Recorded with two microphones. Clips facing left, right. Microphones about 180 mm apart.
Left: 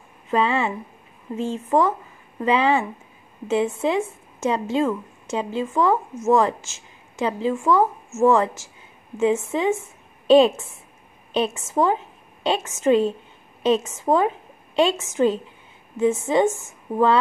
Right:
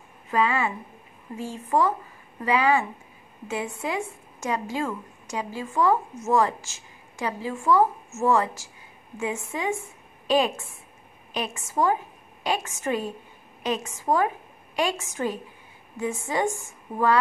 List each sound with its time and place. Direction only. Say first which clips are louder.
0.3 s a woman's voice: left 3 dB; 25° left (ahead or behind)